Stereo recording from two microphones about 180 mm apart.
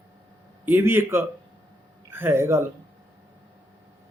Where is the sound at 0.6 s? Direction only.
10° right (ahead or behind).